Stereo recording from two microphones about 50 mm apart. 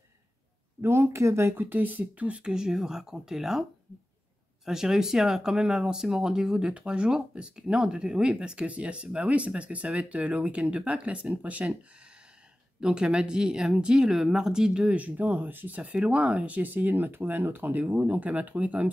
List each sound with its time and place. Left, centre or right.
0.7 s speech: right
1.5 s speech: right
2.5 s speech: centre
4.6 s speech: centre; by 11.6 s right
12.8 s speech: centre
15.0 s speech: right